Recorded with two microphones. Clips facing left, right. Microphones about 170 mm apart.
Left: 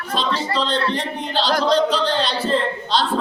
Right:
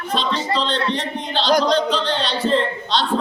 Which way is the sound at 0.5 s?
10° left (ahead or behind).